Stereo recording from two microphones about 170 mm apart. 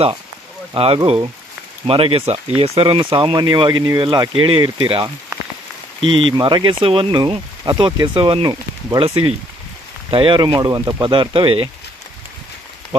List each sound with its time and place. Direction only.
0.7 s speech: 35° right (ahead or behind)